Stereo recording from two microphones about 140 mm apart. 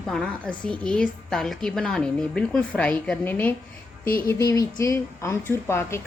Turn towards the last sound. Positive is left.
turn(degrees=15)  # may be behind; listen again after turning